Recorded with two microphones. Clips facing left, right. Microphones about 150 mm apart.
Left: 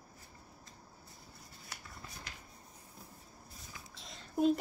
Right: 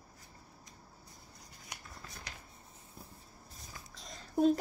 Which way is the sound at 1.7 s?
20° right (ahead or behind).